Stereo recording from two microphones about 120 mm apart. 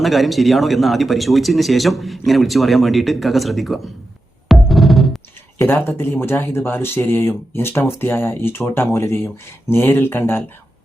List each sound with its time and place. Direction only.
0.0 s a man's voice: centre (ahead or behind)
4.4 s music: centre (ahead or behind)
5.5 s speech: 20° left (ahead or behind)